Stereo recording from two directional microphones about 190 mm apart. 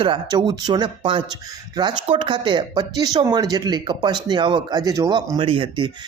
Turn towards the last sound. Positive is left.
turn(degrees=-25)  # may be behind; listen again after turning